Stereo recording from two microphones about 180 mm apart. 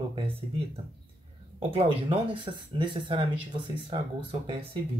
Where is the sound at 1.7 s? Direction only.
30° right (ahead or behind).